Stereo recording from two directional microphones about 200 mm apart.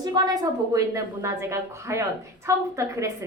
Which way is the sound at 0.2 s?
20° right (ahead or behind).